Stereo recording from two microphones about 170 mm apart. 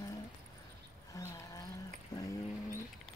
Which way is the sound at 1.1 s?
15° left (ahead or behind).